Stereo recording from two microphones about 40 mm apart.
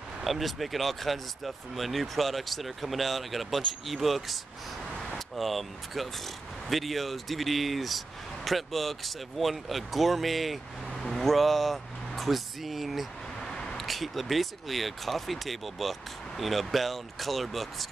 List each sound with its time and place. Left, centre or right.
0.2 s speech: centre
13.4 s a sound: centre
13.7 s speech: centre